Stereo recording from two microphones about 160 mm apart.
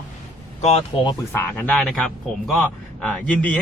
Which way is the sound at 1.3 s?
10° left (ahead or behind).